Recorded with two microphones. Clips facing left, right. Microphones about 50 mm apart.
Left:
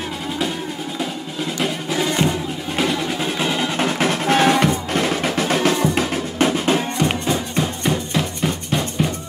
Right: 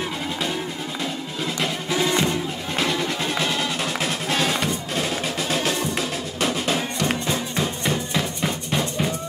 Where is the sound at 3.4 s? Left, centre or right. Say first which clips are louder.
Left 3 dB; centre.